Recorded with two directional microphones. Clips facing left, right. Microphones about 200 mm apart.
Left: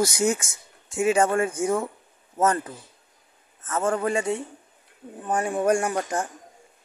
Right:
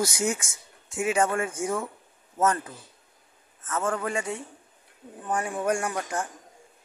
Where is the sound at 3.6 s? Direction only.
30° left (ahead or behind).